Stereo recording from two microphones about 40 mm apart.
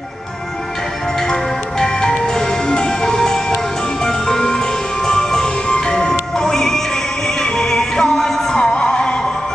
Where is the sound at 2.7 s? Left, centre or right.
Centre.